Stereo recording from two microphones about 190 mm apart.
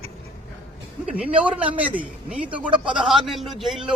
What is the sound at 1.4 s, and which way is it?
A man's voice, 5° right (ahead or behind).